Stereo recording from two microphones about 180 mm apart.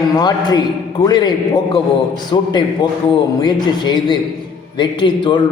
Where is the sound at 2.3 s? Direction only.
20° left (ahead or behind).